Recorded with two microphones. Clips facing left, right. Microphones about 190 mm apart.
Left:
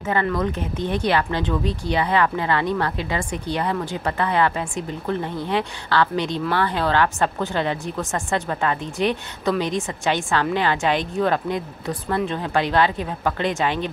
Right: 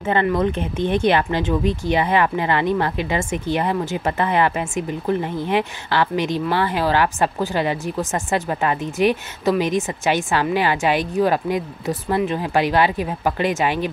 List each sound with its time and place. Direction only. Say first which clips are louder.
0.0 s speech: right 3 dB; 25° right (ahead or behind)